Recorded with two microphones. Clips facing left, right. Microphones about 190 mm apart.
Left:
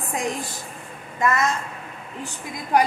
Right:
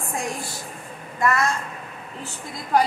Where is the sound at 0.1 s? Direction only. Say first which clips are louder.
Left 3 dB; 20° left (ahead or behind).